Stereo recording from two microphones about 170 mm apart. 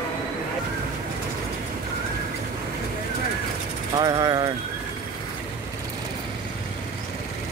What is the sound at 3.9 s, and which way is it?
Vehicle, 25° right (ahead or behind).